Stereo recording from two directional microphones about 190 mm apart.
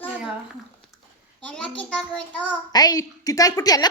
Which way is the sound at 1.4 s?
5° left (ahead or behind).